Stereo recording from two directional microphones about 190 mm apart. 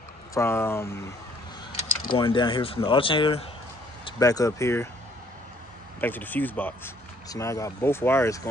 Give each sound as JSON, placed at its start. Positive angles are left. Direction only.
{"t": 0.3, "sound": "speech", "side_deg": 15}
{"t": 2.1, "sound": "speech", "side_deg": 25}
{"t": 5.9, "sound": "speech", "side_deg": 10}